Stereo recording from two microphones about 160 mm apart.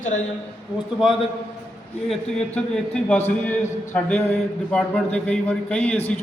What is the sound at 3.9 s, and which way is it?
A man's voice, 10° left (ahead or behind).